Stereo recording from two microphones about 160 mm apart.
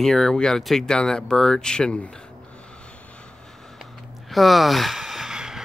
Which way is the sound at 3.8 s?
Centre (ahead or behind).